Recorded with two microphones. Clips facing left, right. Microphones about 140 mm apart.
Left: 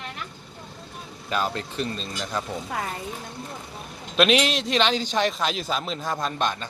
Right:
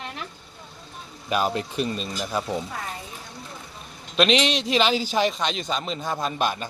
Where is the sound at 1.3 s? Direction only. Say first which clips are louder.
Right 3 dB; 15° right (ahead or behind).